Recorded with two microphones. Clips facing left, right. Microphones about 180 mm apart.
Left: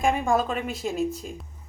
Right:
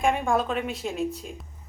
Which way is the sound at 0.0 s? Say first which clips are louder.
Left 1 dB; centre (ahead or behind).